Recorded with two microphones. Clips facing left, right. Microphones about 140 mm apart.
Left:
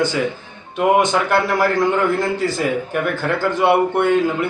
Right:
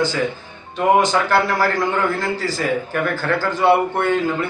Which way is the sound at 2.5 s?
20° left (ahead or behind).